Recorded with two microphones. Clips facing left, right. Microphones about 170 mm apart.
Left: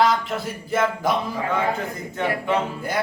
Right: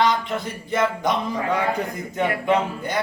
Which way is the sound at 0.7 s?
5° left (ahead or behind).